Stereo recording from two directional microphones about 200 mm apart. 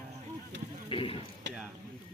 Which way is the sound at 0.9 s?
25° left (ahead or behind).